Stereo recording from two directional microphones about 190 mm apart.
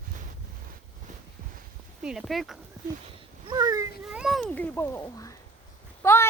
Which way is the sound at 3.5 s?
20° right (ahead or behind).